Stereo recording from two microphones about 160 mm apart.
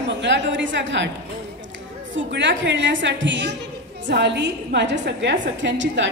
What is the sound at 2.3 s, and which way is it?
Speech, 90° right.